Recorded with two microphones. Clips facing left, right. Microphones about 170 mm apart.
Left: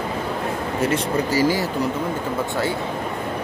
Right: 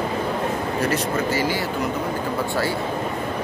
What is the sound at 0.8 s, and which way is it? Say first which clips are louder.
Speech: left 3 dB; 30° left (ahead or behind).